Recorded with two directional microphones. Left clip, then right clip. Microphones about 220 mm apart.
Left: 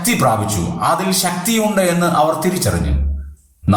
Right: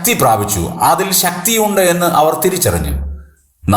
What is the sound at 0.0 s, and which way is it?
A man's voice, 35° right (ahead or behind).